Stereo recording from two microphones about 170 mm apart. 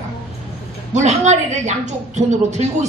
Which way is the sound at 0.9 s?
45° right (ahead or behind).